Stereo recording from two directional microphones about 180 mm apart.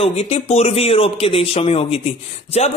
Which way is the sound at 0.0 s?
35° left (ahead or behind).